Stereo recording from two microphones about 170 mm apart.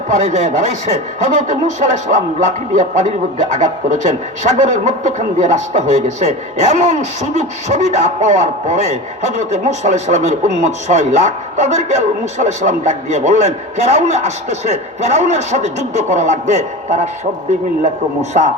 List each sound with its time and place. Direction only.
0.1 s speech: 45° right (ahead or behind)